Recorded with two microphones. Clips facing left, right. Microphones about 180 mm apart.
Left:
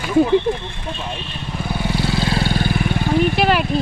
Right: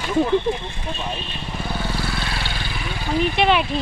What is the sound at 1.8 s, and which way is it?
Vehicle, 20° left (ahead or behind).